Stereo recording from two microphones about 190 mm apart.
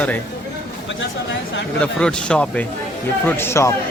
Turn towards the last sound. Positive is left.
turn(degrees=15)  # may be behind; listen again after turning